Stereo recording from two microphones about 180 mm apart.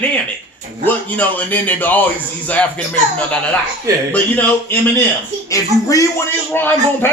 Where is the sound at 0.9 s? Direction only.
10° left (ahead or behind).